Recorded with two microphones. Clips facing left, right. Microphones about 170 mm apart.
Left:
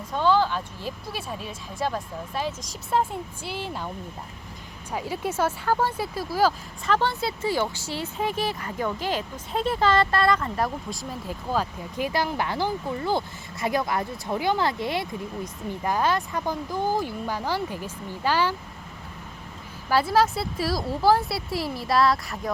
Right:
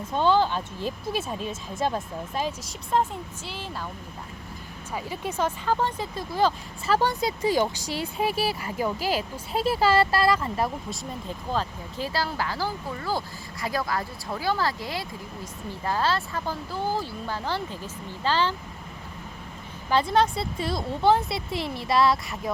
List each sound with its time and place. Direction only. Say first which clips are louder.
0.1 s speech: even; 20° right (ahead or behind)
2.9 s speech: even; 5° left (ahead or behind)
4.9 s speech: left 3 dB; 10° left (ahead or behind)
7.0 s speech: right 2 dB; 15° right (ahead or behind)
11.3 s speech: left 2 dB; 10° left (ahead or behind)
19.9 s speech: left 1 dB; 5° left (ahead or behind)